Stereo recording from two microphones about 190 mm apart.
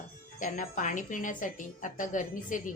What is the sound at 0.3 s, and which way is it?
A woman's voice, 45° left (ahead or behind).